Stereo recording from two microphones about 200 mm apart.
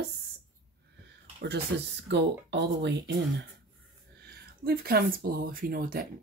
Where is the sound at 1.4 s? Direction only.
60° right (ahead or behind).